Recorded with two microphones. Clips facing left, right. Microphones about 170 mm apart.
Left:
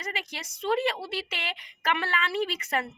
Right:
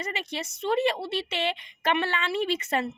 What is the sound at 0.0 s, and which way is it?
A woman's voice, 25° right (ahead or behind).